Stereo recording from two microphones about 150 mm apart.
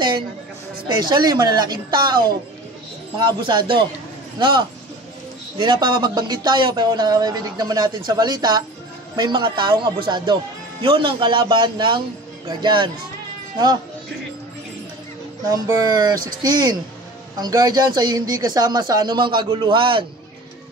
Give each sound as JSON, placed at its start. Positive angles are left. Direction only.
{"t": 0.8, "sound": "speech", "side_deg": -30}
{"t": 3.4, "sound": "speech", "side_deg": -30}
{"t": 5.6, "sound": "speech", "side_deg": -30}
{"t": 15.5, "sound": "speech", "side_deg": -25}